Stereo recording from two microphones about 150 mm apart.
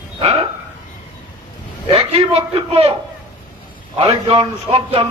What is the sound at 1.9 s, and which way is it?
Speech, 40° right (ahead or behind).